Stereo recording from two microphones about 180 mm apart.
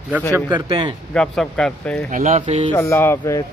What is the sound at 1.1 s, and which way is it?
Speech, 5° left (ahead or behind).